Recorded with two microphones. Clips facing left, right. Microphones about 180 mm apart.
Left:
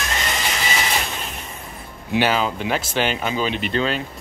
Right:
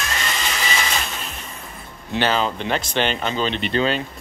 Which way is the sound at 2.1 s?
10° left (ahead or behind).